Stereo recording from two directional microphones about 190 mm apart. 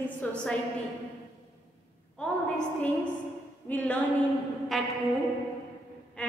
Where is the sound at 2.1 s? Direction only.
5° left (ahead or behind).